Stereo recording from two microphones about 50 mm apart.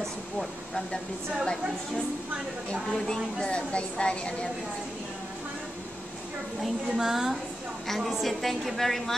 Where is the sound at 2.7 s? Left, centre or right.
Centre.